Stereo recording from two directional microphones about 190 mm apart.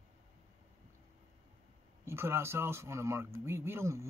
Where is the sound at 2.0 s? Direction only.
15° right (ahead or behind).